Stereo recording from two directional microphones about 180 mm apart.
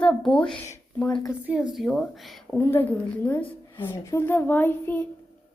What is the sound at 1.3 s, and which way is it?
A woman's voice, 5° right (ahead or behind).